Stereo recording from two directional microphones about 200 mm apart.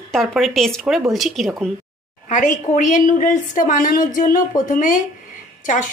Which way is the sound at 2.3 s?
40° left (ahead or behind).